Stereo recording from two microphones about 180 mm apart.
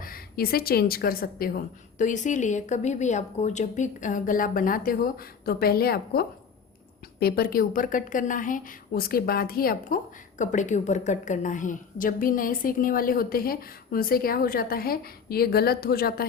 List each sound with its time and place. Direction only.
0.0 s a woman's voice: 55° left (ahead or behind)
2.0 s a woman's voice: 45° left (ahead or behind)